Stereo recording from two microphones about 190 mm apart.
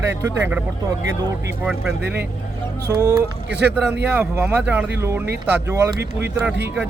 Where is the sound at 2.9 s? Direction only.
20° right (ahead or behind).